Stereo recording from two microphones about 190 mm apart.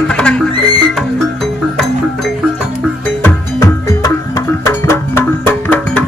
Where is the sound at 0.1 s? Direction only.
5° left (ahead or behind).